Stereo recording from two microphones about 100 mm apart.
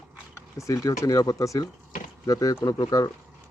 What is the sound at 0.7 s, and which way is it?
Speech, 35° left (ahead or behind).